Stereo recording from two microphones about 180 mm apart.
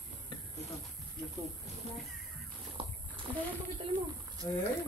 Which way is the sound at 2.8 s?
30° right (ahead or behind).